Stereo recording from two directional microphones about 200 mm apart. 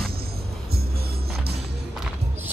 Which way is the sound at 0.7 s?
50° right (ahead or behind).